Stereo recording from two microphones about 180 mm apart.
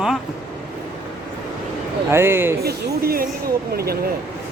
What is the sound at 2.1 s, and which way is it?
Speech, 15° right (ahead or behind).